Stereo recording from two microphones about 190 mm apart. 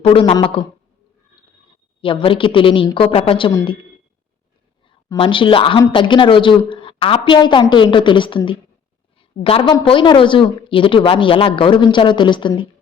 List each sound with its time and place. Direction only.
0.0 s a woman's voice: 30° left (ahead or behind)
2.0 s a woman's voice: 25° left (ahead or behind)
4.9 s a woman's voice: 25° left (ahead or behind)